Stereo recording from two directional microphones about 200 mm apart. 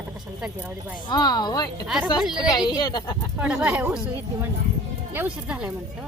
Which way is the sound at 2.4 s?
20° left (ahead or behind).